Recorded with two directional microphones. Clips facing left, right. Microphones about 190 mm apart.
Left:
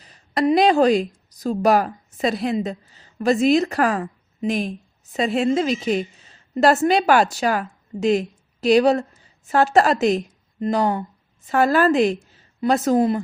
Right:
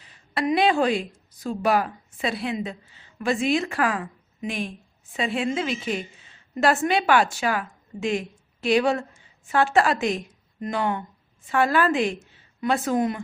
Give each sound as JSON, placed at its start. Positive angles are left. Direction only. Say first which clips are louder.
{"t": 0.0, "sound": "a woman's voice", "louder": "left 6 dB", "side_deg": 40}